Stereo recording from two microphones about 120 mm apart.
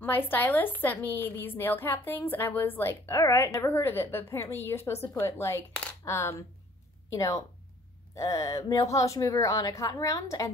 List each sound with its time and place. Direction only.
0.0 s a woman's voice: 15° left (ahead or behind)